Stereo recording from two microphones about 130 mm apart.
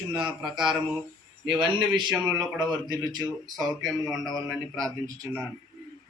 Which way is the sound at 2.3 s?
30° right (ahead or behind).